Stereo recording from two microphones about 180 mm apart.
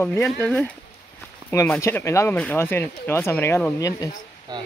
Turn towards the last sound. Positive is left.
turn(degrees=-20)  # may be behind; listen again after turning